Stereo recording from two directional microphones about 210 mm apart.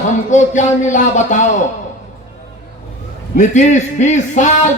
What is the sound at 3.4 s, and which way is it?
A man's voice, 35° left (ahead or behind).